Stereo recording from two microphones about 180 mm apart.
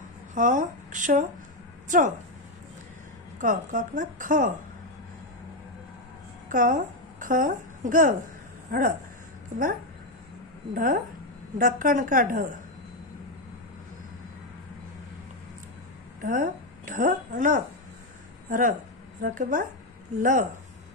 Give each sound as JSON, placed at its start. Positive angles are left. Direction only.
{"t": 0.3, "sound": "a woman's voice", "side_deg": -45}
{"t": 3.3, "sound": "a woman's voice", "side_deg": -45}
{"t": 6.5, "sound": "a woman's voice", "side_deg": -45}
{"t": 10.7, "sound": "a woman's voice", "side_deg": -50}
{"t": 16.2, "sound": "a woman's voice", "side_deg": -50}